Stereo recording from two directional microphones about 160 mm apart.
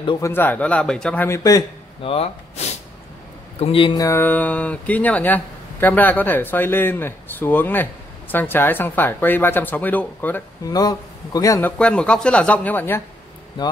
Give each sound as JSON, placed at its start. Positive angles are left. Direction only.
{"t": 0.2, "sound": "speech", "side_deg": 10}
{"t": 2.0, "sound": "speech", "side_deg": 40}
{"t": 3.6, "sound": "speech", "side_deg": 30}
{"t": 10.7, "sound": "a man's voice", "side_deg": 25}
{"t": 11.8, "sound": "speech", "side_deg": 5}
{"t": 13.6, "sound": "a man's voice", "side_deg": 25}